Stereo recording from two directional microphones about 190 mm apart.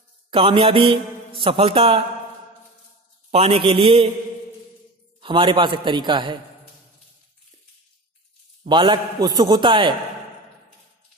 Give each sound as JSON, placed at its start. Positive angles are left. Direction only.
{"t": 0.3, "sound": "a man's voice", "side_deg": -30}
{"t": 3.3, "sound": "a man's voice", "side_deg": -30}
{"t": 5.2, "sound": "a man's voice", "side_deg": -25}
{"t": 8.6, "sound": "a man's voice", "side_deg": -25}